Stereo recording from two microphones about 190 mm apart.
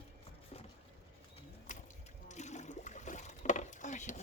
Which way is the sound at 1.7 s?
40° left (ahead or behind).